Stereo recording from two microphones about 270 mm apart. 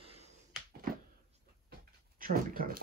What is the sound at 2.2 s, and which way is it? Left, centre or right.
Speech, right.